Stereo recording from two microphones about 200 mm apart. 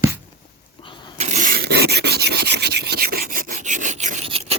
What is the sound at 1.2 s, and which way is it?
Filing, 40° right (ahead or behind).